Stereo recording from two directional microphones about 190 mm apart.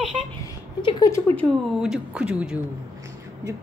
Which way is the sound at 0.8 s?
25° left (ahead or behind).